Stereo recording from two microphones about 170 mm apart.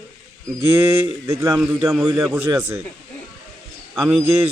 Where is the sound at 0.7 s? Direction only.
15° right (ahead or behind).